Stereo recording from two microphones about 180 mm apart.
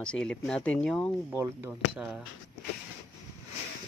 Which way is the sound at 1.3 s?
10° right (ahead or behind).